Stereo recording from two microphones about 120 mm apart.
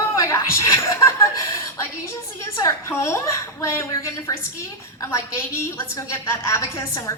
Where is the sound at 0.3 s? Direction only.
25° left (ahead or behind).